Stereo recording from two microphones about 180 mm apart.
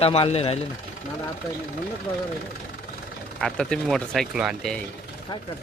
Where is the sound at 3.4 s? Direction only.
5° left (ahead or behind).